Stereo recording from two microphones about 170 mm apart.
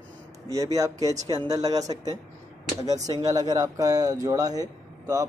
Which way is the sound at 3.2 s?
20° right (ahead or behind).